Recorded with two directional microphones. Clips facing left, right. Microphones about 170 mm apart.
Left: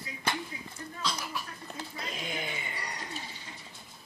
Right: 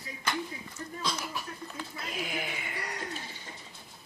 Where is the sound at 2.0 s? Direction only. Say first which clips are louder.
Right 2 dB; 5° right (ahead or behind).